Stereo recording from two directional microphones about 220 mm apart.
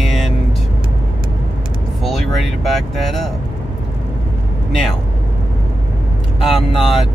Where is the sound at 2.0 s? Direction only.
Centre (ahead or behind).